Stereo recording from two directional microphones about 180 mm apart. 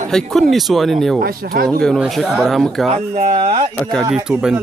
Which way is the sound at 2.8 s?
40° right (ahead or behind).